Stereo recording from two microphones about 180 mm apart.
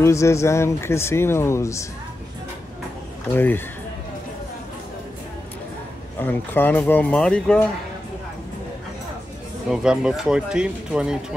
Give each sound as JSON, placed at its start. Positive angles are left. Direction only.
{"t": 0.0, "sound": "speech", "side_deg": 15}
{"t": 3.3, "sound": "speech", "side_deg": 10}
{"t": 6.1, "sound": "speech", "side_deg": 10}
{"t": 9.7, "sound": "speech", "side_deg": -5}